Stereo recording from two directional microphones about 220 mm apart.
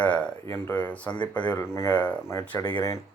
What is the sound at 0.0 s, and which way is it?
Speech, 5° left (ahead or behind).